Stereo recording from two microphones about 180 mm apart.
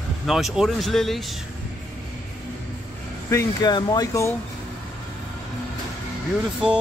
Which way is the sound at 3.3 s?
20° left (ahead or behind).